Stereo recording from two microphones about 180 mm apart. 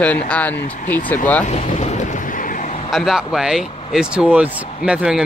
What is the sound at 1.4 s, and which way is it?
Boat, 40° left (ahead or behind).